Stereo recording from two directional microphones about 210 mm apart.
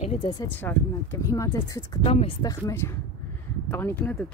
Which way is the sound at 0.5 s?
10° left (ahead or behind).